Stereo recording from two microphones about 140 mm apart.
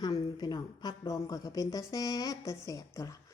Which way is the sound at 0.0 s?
30° left (ahead or behind).